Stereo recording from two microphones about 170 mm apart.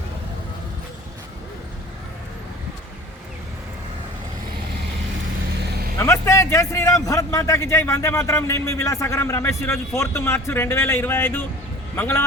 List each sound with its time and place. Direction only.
6.0 s a man's voice: 15° left (ahead or behind)